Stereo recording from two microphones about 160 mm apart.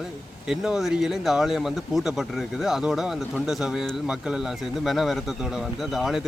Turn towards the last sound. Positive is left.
turn(degrees=0)  # may be behind; listen again after turning